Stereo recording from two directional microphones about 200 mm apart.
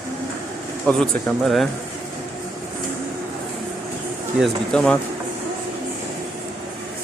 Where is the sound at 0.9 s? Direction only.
5° left (ahead or behind).